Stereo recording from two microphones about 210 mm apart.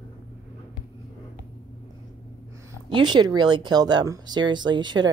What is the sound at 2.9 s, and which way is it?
Speech, 20° right (ahead or behind).